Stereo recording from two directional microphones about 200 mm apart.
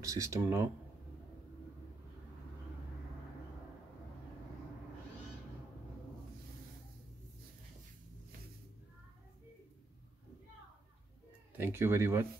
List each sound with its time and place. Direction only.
0.0 s speech: 15° right (ahead or behind)
11.5 s speech: 10° right (ahead or behind)